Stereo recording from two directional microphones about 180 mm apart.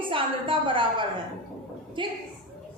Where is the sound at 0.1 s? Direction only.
30° right (ahead or behind).